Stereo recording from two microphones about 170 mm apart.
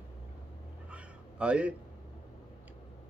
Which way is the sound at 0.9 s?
5° right (ahead or behind).